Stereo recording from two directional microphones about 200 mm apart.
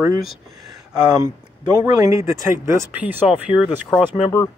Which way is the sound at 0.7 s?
20° right (ahead or behind).